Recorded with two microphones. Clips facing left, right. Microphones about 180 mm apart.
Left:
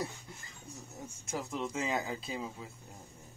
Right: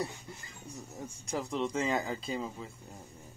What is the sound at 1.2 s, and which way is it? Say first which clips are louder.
Speech: right 4 dB; 5° left (ahead or behind).